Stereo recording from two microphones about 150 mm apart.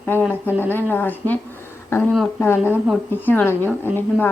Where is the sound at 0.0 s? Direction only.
15° left (ahead or behind).